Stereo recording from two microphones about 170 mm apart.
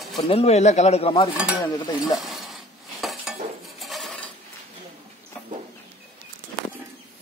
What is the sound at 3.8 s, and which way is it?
Cutlery, centre (ahead or behind).